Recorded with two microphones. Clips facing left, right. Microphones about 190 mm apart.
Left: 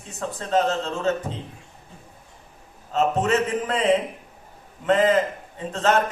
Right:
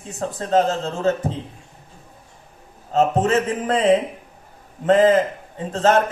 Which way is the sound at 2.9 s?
35° right (ahead or behind).